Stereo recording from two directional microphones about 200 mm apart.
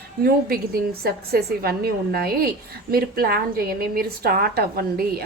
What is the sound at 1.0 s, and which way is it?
A woman's voice, 50° right (ahead or behind).